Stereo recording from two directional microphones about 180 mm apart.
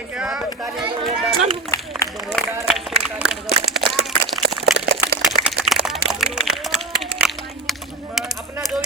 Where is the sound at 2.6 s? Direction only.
Centre (ahead or behind).